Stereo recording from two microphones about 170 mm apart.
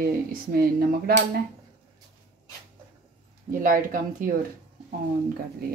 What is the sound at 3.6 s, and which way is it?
Speech, 55° right (ahead or behind).